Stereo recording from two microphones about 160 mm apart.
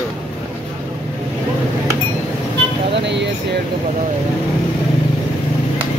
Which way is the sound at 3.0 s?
90° right.